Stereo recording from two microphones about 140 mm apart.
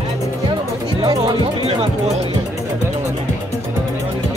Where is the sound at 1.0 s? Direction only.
30° right (ahead or behind).